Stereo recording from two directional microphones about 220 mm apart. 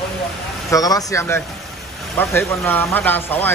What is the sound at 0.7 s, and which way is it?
Speech, 15° left (ahead or behind).